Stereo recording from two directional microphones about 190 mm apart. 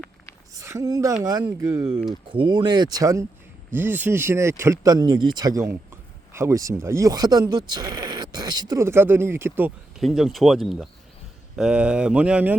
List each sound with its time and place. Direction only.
0.5 s speech: 15° right (ahead or behind)
2.3 s speech: 25° right (ahead or behind); by 12.5 s 5° right (ahead or behind)